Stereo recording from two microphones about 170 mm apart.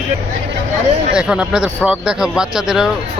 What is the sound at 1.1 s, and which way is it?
Speech, 5° right (ahead or behind).